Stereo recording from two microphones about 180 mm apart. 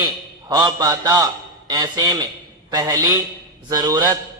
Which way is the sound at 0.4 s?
25° right (ahead or behind).